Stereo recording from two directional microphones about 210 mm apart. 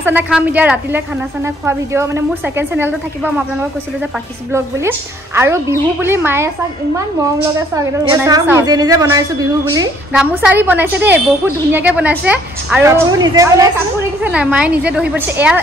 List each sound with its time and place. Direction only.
0.0 s a woman's voice: 10° right (ahead or behind)
4.5 s a woman's voice: 10° right (ahead or behind)
7.7 s a woman's voice: 15° right (ahead or behind)
10.1 s a woman's voice: 5° right (ahead or behind)
14.2 s a woman's voice: 5° right (ahead or behind)